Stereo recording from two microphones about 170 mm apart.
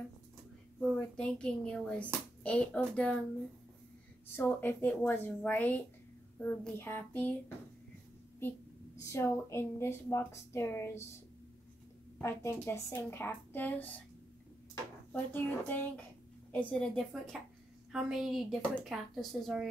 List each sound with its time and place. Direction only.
0.7 s a woman's voice: 5° left (ahead or behind)
4.4 s a woman's voice: 10° left (ahead or behind)
9.0 s a woman's voice: 15° left (ahead or behind)
12.2 s a woman's voice: 15° left (ahead or behind)
15.1 s a woman's voice: 10° left (ahead or behind)